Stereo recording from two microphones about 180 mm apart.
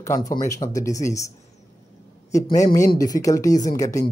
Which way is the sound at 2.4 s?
20° left (ahead or behind).